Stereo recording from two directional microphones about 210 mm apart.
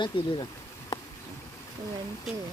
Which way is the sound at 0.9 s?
25° left (ahead or behind).